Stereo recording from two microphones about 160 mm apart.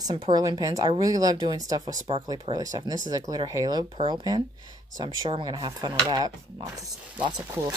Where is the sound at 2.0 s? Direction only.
35° right (ahead or behind).